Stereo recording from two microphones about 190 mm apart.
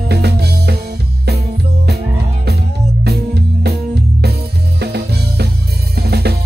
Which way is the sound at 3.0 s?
55° right (ahead or behind).